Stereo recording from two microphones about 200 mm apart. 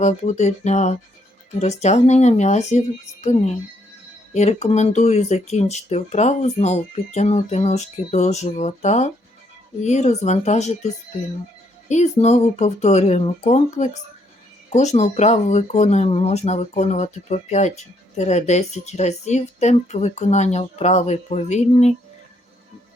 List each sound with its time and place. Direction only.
0.0 s speech: 35° left (ahead or behind)